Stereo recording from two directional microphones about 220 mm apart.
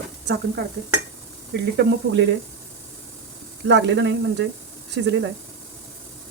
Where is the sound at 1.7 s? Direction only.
55° right (ahead or behind).